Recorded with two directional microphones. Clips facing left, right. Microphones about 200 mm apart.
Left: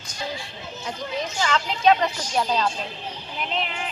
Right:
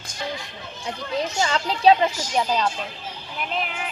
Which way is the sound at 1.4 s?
35° right (ahead or behind).